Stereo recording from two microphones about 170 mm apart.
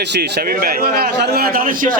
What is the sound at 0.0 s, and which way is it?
A man's voice, 80° right.